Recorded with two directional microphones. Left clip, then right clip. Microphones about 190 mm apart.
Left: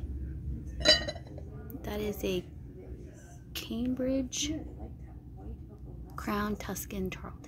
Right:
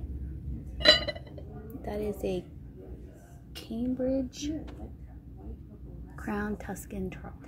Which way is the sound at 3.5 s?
5° left (ahead or behind).